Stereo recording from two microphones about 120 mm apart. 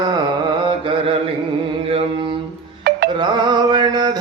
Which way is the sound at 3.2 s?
40° right (ahead or behind).